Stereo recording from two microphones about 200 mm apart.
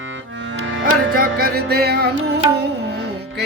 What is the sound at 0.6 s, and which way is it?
Music, 70° right (ahead or behind).